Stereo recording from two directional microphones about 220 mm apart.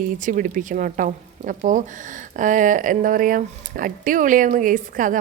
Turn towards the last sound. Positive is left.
turn(degrees=-35)  # may be behind; listen again after turning